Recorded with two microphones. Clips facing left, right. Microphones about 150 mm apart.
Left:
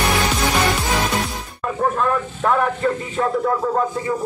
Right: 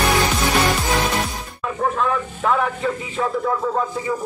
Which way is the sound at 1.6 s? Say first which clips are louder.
Left 1 dB; centre (ahead or behind).